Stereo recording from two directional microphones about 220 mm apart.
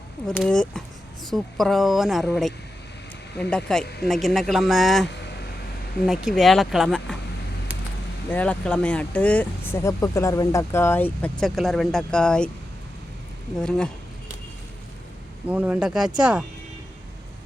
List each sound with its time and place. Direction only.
0.3 s speech: 5° left (ahead or behind)
3.8 s speech: 50° left (ahead or behind)
4.1 s speech: centre (ahead or behind)
6.1 s speech: centre (ahead or behind)
8.3 s speech: 5° left (ahead or behind)
13.6 s speech: 5° left (ahead or behind)
15.4 s speech: 5° right (ahead or behind)